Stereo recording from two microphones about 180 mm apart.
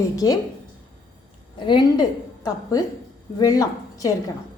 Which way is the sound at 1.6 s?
25° left (ahead or behind).